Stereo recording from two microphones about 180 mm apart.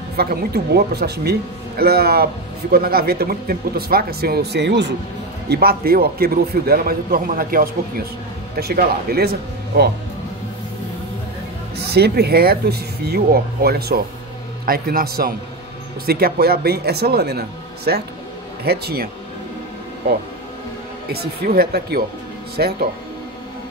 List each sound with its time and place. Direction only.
0.2 s a man's voice: 60° right (ahead or behind); by 4.9 s 75° right (ahead or behind)
5.5 s a man's voice: 55° right (ahead or behind)
11.9 s a man's voice: 60° right (ahead or behind)
21.1 s a man's voice: 60° right (ahead or behind)